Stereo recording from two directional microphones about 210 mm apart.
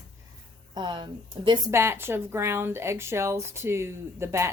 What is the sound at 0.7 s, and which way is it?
Speech, 20° right (ahead or behind).